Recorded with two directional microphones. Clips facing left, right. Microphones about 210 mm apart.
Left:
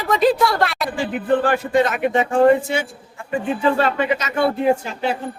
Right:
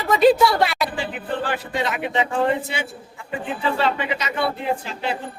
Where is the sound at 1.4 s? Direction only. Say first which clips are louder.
Left 7 dB; 50° left (ahead or behind).